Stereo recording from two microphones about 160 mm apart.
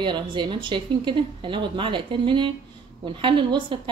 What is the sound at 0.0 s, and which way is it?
A woman's voice, 30° right (ahead or behind).